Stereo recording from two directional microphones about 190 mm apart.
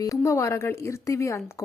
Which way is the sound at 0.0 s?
15° left (ahead or behind).